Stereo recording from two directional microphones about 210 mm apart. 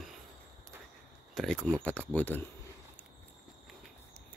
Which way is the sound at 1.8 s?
5° left (ahead or behind).